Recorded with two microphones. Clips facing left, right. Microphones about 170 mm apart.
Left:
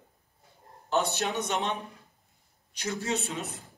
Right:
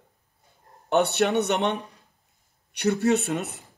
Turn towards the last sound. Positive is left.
turn(degrees=-65)  # may be behind; listen again after turning